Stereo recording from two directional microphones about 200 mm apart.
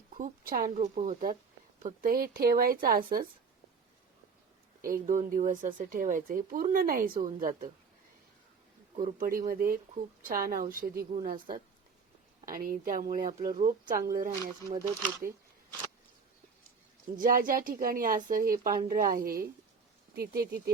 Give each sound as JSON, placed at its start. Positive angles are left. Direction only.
{"t": 0.1, "sound": "speech", "side_deg": -45}
{"t": 0.7, "sound": "a woman's voice", "side_deg": -35}
{"t": 4.9, "sound": "speech", "side_deg": -40}
{"t": 9.0, "sound": "a woman's voice", "side_deg": -40}
{"t": 12.5, "sound": "speech", "side_deg": -45}
{"t": 17.2, "sound": "speech", "side_deg": -45}